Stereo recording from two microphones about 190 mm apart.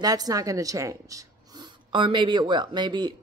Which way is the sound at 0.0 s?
20° right (ahead or behind).